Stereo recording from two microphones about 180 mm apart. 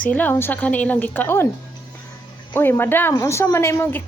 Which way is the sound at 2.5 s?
10° left (ahead or behind).